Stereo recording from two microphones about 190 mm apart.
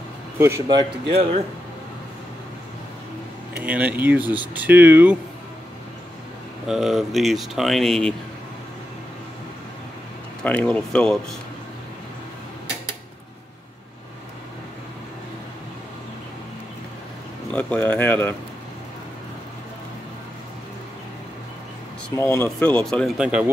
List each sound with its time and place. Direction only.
0.4 s speech: 20° right (ahead or behind)
3.5 s speech: 5° right (ahead or behind)
6.6 s speech: centre (ahead or behind)
10.4 s speech: 5° left (ahead or behind)
17.5 s speech: 5° left (ahead or behind)
22.1 s speech: 10° left (ahead or behind); by 23.5 s 5° right (ahead or behind)